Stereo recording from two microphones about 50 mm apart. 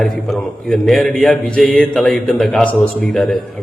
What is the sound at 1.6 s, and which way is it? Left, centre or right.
A man's voice, centre.